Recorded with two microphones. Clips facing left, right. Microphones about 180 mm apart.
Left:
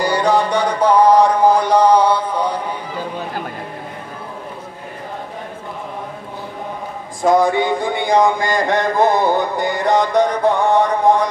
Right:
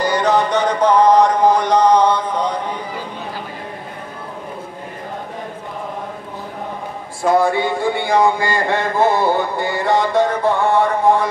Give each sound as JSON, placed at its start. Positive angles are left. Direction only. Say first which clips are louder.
{"t": 0.0, "sound": "mantra", "louder": "even", "side_deg": 10}
{"t": 7.3, "sound": "speech", "louder": "even", "side_deg": 15}